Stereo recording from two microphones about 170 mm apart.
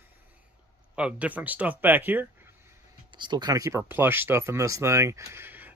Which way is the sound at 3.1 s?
25° right (ahead or behind).